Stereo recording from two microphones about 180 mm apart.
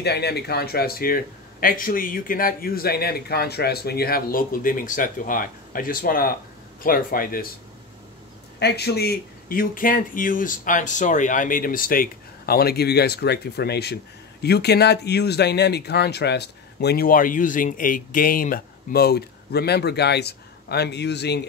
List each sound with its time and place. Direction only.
0.0 s speech: 65° left (ahead or behind)
8.5 s speech: 65° left (ahead or behind)